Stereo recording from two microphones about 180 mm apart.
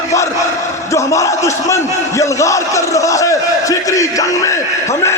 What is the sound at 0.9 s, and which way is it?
Speech, 15° left (ahead or behind).